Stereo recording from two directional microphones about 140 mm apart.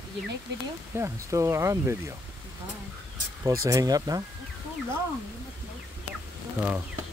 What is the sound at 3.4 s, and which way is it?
Speech, 20° right (ahead or behind).